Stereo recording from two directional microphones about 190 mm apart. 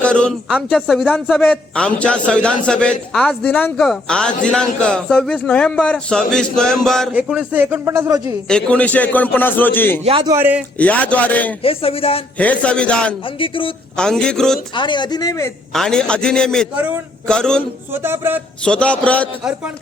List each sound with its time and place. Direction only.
0.0 s a man's voice: 5° left (ahead or behind); by 8.4 s 15° right (ahead or behind)
8.4 s a man's voice: 5° left (ahead or behind)
10.0 s a man's voice: 30° right (ahead or behind)
10.3 s a man's voice: 10° right (ahead or behind)
10.8 s a man's voice: 10° left (ahead or behind)
11.6 s a sound: 30° left (ahead or behind)
12.4 s a man's voice: 5° left (ahead or behind)
13.2 s speech: 25° left (ahead or behind)
13.9 s a man's voice: 5° left (ahead or behind)
14.8 s speech: 25° left (ahead or behind)
15.7 s a man's voice: 5° left (ahead or behind)
17.9 s a man's voice: 10° right (ahead or behind)
18.6 s a man's voice: 5° left (ahead or behind)